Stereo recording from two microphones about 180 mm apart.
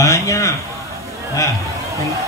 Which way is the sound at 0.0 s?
15° left (ahead or behind).